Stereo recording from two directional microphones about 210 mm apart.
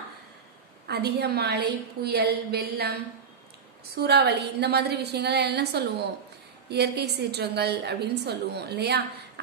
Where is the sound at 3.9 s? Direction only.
50° right (ahead or behind).